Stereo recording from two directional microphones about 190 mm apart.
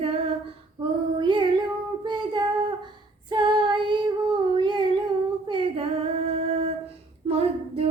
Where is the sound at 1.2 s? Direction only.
25° right (ahead or behind).